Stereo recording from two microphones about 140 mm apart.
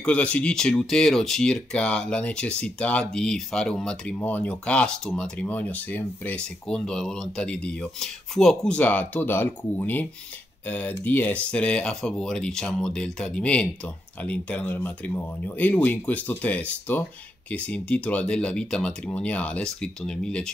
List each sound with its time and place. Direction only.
0.0 s speech: 10° left (ahead or behind)